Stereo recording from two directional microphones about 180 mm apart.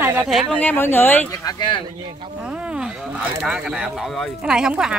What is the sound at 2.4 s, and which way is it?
Speech, 5° right (ahead or behind).